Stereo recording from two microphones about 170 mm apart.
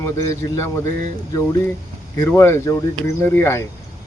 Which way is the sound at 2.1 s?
15° left (ahead or behind).